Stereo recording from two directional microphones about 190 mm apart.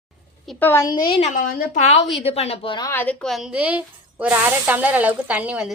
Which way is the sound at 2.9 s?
10° left (ahead or behind).